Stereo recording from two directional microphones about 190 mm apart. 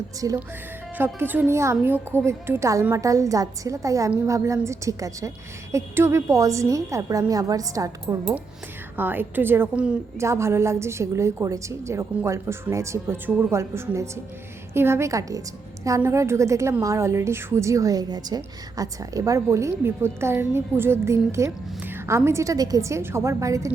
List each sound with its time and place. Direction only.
0.2 s a woman's voice: 20° right (ahead or behind)